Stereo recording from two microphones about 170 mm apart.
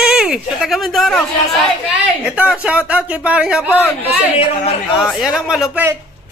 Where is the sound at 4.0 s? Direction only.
35° left (ahead or behind).